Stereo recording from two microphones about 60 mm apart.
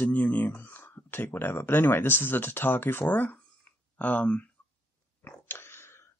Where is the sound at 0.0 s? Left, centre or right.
Left.